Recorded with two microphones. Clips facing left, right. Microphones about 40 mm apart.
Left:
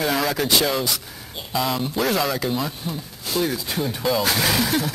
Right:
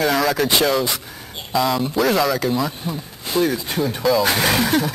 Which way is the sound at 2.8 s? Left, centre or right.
Centre.